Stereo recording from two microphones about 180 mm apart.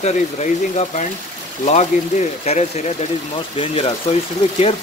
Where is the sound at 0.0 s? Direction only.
40° left (ahead or behind).